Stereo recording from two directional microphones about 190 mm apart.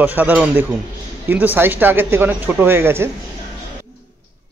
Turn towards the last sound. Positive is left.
turn(degrees=-10)  # may be behind; listen again after turning